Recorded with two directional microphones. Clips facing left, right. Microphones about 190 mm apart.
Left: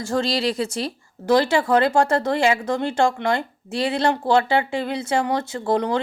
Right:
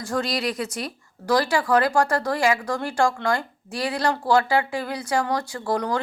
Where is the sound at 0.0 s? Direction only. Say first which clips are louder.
Left 3 dB; 25° left (ahead or behind).